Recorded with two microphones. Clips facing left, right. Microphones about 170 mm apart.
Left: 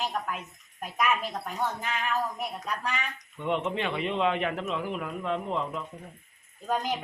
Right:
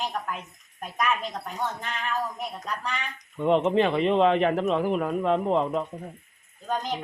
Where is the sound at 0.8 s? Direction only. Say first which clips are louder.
Even; 5° left (ahead or behind).